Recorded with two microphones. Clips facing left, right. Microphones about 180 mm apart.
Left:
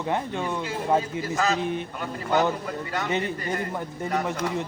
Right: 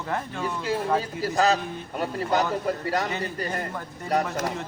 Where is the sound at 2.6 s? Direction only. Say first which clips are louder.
Right 4 dB; 40° right (ahead or behind).